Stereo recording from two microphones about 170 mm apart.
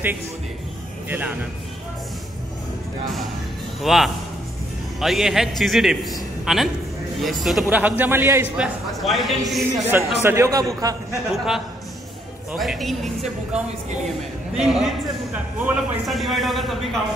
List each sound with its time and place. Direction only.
1.0 s speech: 10° right (ahead or behind)
3.8 s a man's voice: centre (ahead or behind)
9.0 s a man's voice: centre (ahead or behind)
9.8 s speech: 15° right (ahead or behind)
11.3 s a man's voice: centre (ahead or behind)
14.5 s a man's voice: 5° right (ahead or behind)